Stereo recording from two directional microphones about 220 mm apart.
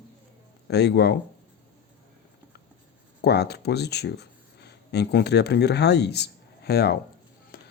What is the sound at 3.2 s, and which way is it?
Speech, 50° left (ahead or behind).